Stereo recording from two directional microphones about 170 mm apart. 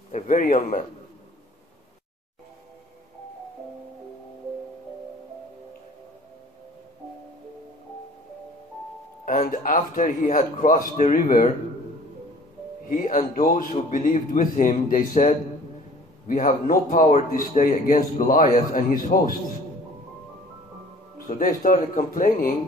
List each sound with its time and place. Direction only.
0.1 s a man's voice: 50° left (ahead or behind)
9.2 s a man's voice: 50° left (ahead or behind)
12.9 s a man's voice: 50° left (ahead or behind)
21.3 s a man's voice: 50° left (ahead or behind)